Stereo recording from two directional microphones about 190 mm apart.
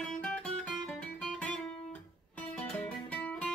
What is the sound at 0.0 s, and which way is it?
Guitar, 5° left (ahead or behind).